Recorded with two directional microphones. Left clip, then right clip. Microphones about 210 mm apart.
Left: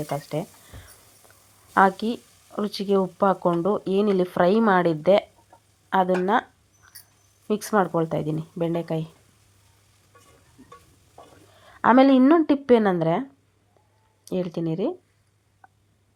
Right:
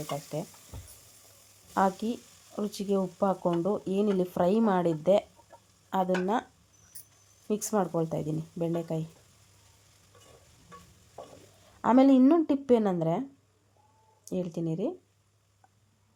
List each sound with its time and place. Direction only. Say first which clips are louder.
1.7 s speech: left 8 dB; 10° left (ahead or behind)
6.9 s a sound: left 6 dB; 15° left (ahead or behind)
7.4 s speech: left 7 dB; 10° left (ahead or behind)
11.8 s speech: left 6 dB; 10° left (ahead or behind)
14.3 s speech: left 6 dB; 10° left (ahead or behind)